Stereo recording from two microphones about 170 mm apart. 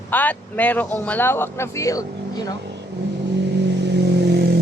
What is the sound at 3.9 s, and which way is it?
Vehicle, 80° right.